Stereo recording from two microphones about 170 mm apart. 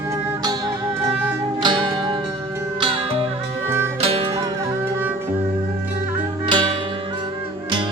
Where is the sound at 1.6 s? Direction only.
25° right (ahead or behind).